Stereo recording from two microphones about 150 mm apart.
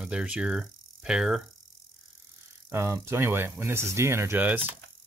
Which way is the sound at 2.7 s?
20° right (ahead or behind).